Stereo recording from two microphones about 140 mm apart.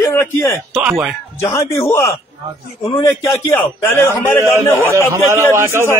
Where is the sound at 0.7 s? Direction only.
Centre (ahead or behind).